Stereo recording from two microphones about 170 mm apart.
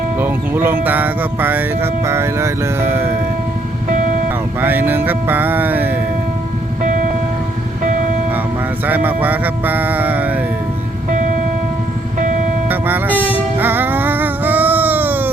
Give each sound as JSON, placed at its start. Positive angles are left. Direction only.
{"t": 0.2, "sound": "speech", "side_deg": -10}
{"t": 4.6, "sound": "speech", "side_deg": -10}
{"t": 8.9, "sound": "speech", "side_deg": -10}
{"t": 12.6, "sound": "music", "side_deg": -10}